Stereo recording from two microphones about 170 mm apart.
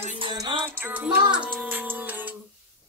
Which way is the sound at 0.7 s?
10° right (ahead or behind).